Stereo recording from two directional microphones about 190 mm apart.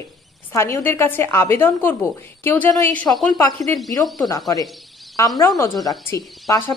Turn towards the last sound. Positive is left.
turn(degrees=10)  # may be behind; listen again after turning